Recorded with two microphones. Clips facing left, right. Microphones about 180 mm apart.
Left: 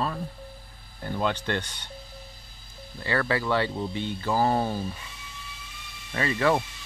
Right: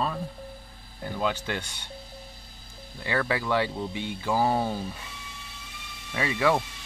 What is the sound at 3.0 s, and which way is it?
Speech, 10° right (ahead or behind).